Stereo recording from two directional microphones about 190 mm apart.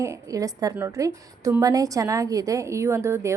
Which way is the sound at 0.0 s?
15° right (ahead or behind).